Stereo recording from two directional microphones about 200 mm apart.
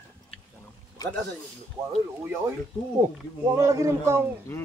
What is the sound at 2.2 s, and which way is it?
A man's voice, 10° right (ahead or behind).